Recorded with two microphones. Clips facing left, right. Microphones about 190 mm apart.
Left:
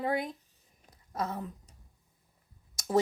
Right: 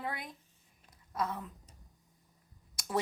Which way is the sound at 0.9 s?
25° left (ahead or behind).